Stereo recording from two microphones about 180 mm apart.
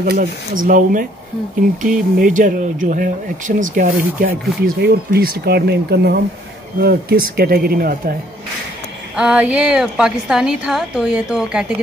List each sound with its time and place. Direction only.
0.0 s speech: 50° right (ahead or behind)
2.1 s speech: 45° right (ahead or behind)
9.1 s a woman's voice: 5° right (ahead or behind)